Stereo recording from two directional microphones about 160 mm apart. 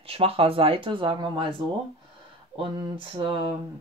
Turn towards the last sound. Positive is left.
turn(degrees=-30)  # may be behind; listen again after turning